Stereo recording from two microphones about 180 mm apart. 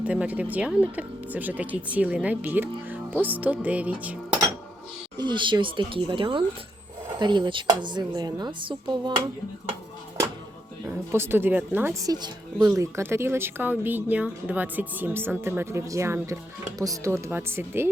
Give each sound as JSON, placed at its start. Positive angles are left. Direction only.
{"t": 0.0, "sound": "speech", "side_deg": -5}
{"t": 5.1, "sound": "a woman's voice", "side_deg": -25}
{"t": 10.8, "sound": "speech", "side_deg": -10}